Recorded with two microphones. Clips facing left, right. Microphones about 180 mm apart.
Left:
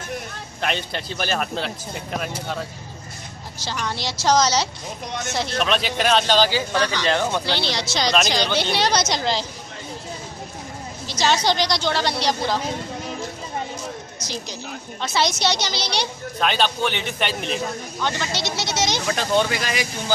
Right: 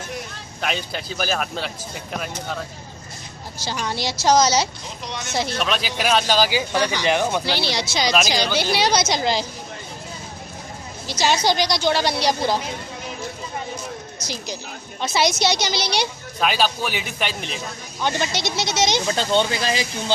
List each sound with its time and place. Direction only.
0.6 s speech: centre (ahead or behind)
3.7 s a woman's voice: 10° right (ahead or behind)
5.0 s speech: 50° left (ahead or behind)
5.4 s speech: centre (ahead or behind)
11.0 s a woman's voice: 10° right (ahead or behind)
15.0 s a woman's voice: 10° right (ahead or behind)
18.3 s speech: 15° right (ahead or behind)